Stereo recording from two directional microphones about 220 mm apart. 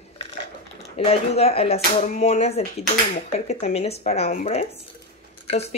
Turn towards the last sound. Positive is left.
turn(degrees=30)  # may be behind; listen again after turning